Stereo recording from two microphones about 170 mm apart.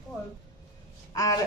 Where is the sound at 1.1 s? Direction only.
20° left (ahead or behind).